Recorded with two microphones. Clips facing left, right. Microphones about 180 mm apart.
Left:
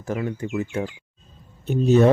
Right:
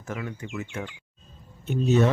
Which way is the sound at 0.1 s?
35° left (ahead or behind).